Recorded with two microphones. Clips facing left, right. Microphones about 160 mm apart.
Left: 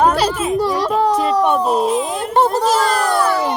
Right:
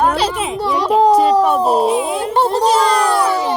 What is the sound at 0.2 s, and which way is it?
Children playing, 40° left (ahead or behind).